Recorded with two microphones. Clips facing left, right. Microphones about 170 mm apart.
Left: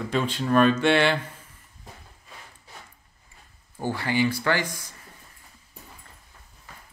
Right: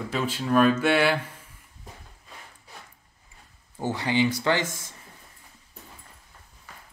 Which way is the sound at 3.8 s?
20° right (ahead or behind).